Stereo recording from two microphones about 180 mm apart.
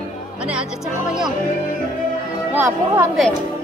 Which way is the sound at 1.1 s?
5° right (ahead or behind).